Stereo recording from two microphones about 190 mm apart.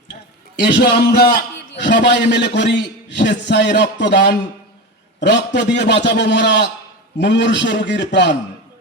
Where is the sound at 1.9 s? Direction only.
65° left (ahead or behind).